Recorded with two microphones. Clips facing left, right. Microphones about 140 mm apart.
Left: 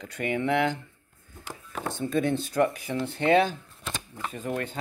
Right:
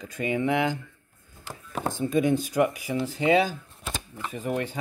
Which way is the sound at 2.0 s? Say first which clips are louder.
Right 3 dB; 10° right (ahead or behind).